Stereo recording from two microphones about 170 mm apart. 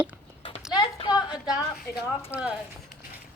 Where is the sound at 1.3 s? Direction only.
5° right (ahead or behind).